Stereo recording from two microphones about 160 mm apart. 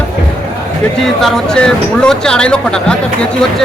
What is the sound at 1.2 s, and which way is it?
Speech, 5° left (ahead or behind).